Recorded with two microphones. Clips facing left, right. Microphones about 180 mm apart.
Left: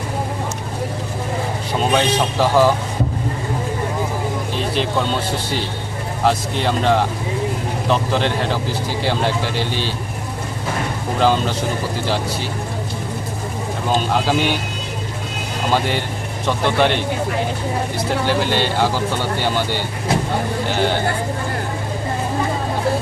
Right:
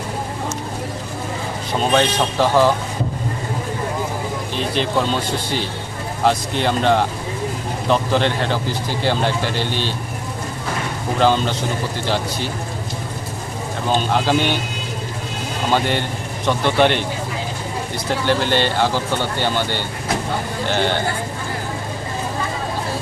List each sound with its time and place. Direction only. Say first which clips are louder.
1.9 s speech: right 1 dB; 5° left (ahead or behind)
4.5 s speech: right 2 dB; centre (ahead or behind)
6.2 s speech: even; centre (ahead or behind)
11.2 s speech: even; centre (ahead or behind)
13.9 s speech: even; 5° left (ahead or behind)
16.5 s speech: right 1 dB; centre (ahead or behind)